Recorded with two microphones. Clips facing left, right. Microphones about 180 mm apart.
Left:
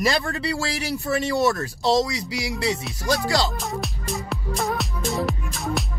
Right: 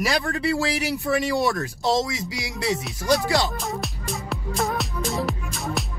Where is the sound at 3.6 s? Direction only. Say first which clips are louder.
Even; centre (ahead or behind).